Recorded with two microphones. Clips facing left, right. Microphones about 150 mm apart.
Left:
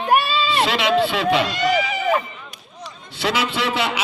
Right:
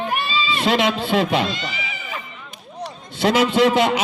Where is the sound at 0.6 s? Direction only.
45° right (ahead or behind).